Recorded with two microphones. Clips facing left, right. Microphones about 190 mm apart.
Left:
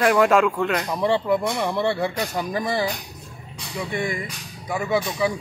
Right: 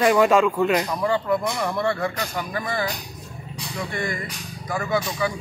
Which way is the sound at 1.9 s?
35° left (ahead or behind).